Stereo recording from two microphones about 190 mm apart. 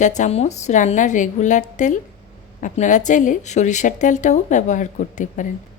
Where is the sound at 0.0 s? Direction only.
40° left (ahead or behind).